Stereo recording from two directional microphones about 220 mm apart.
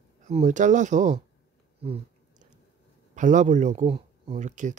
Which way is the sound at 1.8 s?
25° right (ahead or behind).